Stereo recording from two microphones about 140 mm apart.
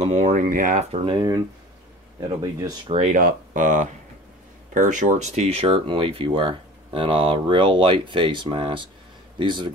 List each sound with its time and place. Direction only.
0.2 s speech: 70° right (ahead or behind)
0.9 s speech: 35° right (ahead or behind)
2.9 s speech: 50° right (ahead or behind)
3.2 s speech: 70° right (ahead or behind); by 9.7 s 35° right (ahead or behind)